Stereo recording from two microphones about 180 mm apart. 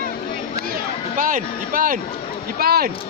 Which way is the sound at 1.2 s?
45° right (ahead or behind).